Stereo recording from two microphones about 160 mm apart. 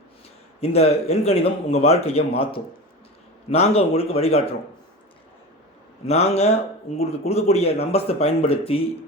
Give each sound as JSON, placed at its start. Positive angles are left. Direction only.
{"t": 0.6, "sound": "speech", "side_deg": 40}
{"t": 6.1, "sound": "speech", "side_deg": 40}